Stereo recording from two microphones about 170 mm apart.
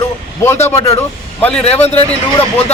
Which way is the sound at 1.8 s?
40° left (ahead or behind).